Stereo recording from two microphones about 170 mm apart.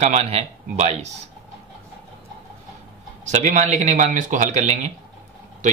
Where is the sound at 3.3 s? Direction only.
45° right (ahead or behind).